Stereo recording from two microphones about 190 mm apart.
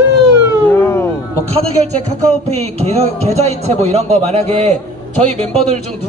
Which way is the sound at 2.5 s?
35° right (ahead or behind).